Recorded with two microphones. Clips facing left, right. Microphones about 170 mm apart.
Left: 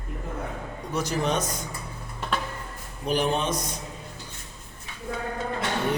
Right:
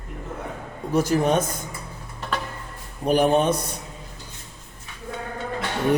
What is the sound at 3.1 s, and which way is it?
Speech, 55° right (ahead or behind).